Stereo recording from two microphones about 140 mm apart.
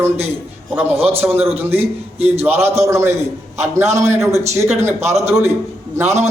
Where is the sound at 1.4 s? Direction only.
45° right (ahead or behind).